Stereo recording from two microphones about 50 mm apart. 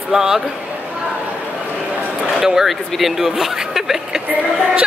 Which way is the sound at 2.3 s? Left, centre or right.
Centre.